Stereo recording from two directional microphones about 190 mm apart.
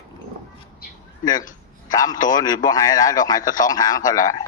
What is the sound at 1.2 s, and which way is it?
A man's voice, 20° left (ahead or behind).